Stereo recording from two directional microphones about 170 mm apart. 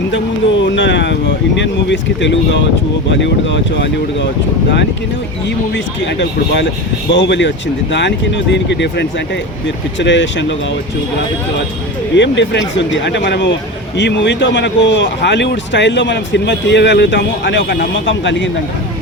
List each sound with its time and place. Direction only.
0.6 s a sound: 90° left
1.5 s speech: 90° left
5.7 s speech: 90° left
12.1 s speech: 90° left